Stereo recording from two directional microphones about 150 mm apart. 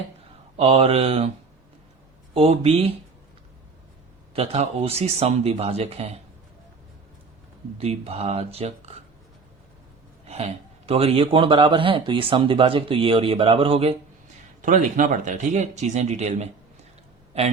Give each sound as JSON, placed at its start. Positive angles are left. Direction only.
{"t": 0.5, "sound": "speech", "side_deg": -40}
{"t": 2.3, "sound": "speech", "side_deg": -40}
{"t": 4.4, "sound": "speech", "side_deg": -45}
{"t": 7.8, "sound": "speech", "side_deg": -40}
{"t": 10.2, "sound": "speech", "side_deg": -45}
{"t": 14.6, "sound": "a man's voice", "side_deg": -60}